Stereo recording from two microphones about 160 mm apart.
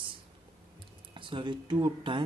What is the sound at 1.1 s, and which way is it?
Speech, 30° right (ahead or behind).